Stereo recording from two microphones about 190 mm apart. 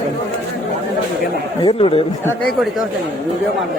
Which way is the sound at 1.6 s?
30° left (ahead or behind).